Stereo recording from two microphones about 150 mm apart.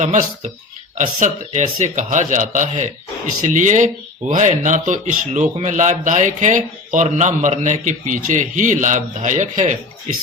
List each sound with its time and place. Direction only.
0.0 s a man's voice: 55° right (ahead or behind)